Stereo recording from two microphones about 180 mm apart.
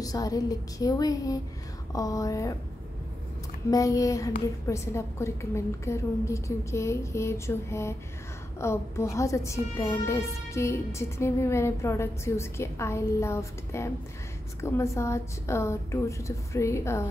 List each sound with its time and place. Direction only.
0.0 s a woman's voice: 20° left (ahead or behind)
3.7 s a woman's voice: 20° left (ahead or behind)